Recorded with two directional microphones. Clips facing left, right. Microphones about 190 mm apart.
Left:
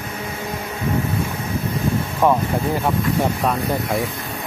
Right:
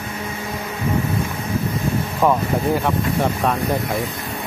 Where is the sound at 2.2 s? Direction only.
Centre (ahead or behind).